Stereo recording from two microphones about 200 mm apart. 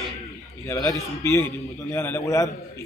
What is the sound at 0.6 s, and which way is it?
A man's voice, 15° left (ahead or behind).